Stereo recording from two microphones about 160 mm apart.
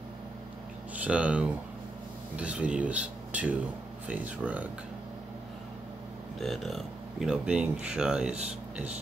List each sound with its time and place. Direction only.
0.9 s speech: 10° right (ahead or behind)
6.4 s speech: centre (ahead or behind)